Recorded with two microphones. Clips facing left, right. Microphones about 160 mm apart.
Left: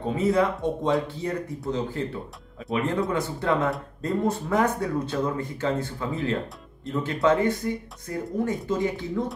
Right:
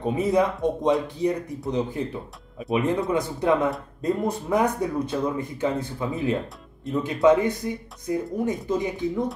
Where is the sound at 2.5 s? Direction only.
15° right (ahead or behind).